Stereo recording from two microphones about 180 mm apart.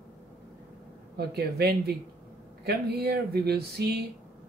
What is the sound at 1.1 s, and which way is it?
Speech, 65° right (ahead or behind).